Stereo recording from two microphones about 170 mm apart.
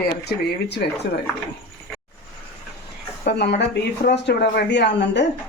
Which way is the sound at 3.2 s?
70° left (ahead or behind).